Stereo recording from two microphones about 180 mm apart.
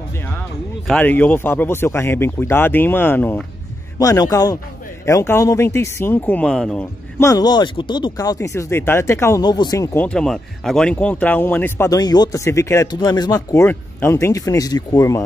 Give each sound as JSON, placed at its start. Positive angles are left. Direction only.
{"t": 0.4, "sound": "a man's voice", "side_deg": 10}
{"t": 7.2, "sound": "speech", "side_deg": 20}
{"t": 10.0, "sound": "speech", "side_deg": 5}